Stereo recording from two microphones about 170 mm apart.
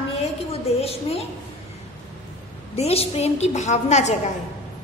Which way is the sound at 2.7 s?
35° left (ahead or behind).